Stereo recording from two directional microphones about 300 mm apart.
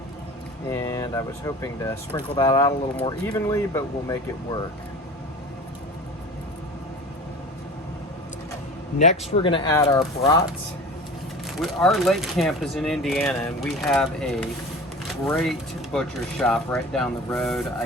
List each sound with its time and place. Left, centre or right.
0.7 s speech: centre
9.0 s speech: left
11.6 s speech: centre